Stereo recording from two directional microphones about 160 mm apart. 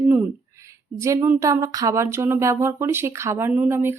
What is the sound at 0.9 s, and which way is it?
Speech, 20° right (ahead or behind).